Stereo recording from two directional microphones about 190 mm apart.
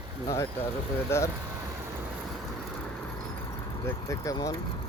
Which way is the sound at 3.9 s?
15° left (ahead or behind).